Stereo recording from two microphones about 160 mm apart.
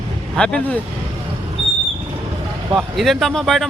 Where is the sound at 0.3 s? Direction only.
5° left (ahead or behind).